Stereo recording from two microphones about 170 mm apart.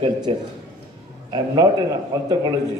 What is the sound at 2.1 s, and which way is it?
Speech, 20° right (ahead or behind).